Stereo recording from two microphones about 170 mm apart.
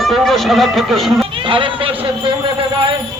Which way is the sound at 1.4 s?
30° right (ahead or behind).